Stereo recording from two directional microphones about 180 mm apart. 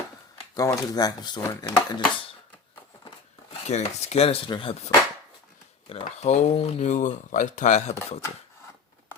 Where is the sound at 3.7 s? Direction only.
40° left (ahead or behind).